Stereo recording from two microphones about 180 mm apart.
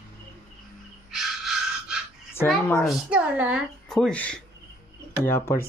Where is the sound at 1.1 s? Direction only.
Centre (ahead or behind).